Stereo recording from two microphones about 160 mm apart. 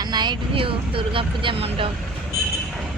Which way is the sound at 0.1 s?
25° right (ahead or behind).